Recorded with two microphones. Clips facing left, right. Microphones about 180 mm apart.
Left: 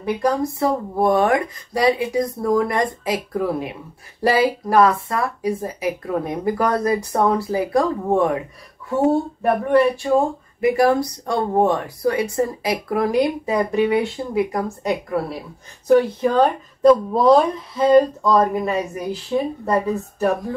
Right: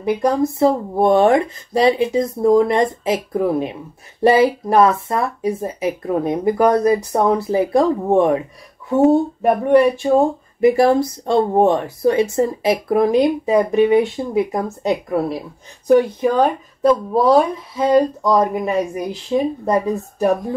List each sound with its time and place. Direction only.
0.0 s speech: 25° right (ahead or behind)
9.4 s speech: 15° right (ahead or behind)
15.9 s speech: 10° right (ahead or behind)